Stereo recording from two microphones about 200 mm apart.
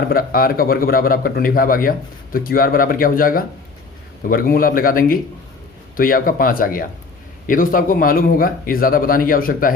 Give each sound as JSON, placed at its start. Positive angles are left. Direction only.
{"t": 0.1, "sound": "a man's voice", "side_deg": 45}